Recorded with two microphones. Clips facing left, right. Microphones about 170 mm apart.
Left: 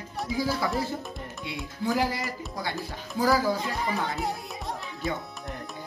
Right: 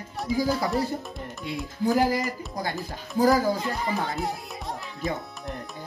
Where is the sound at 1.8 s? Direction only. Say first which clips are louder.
Right 4 dB; 40° right (ahead or behind).